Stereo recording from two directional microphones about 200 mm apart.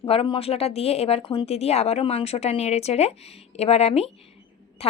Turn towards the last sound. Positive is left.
turn(degrees=30)  # may be behind; listen again after turning